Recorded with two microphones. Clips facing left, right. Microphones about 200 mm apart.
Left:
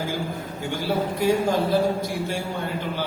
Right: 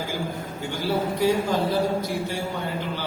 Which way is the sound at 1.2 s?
50° left (ahead or behind).